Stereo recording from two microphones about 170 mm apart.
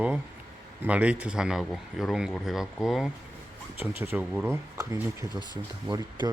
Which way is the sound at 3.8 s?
15° right (ahead or behind).